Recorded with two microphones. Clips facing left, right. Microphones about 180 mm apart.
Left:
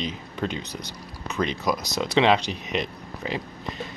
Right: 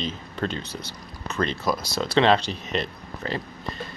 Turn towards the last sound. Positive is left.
turn(degrees=15)  # may be behind; listen again after turning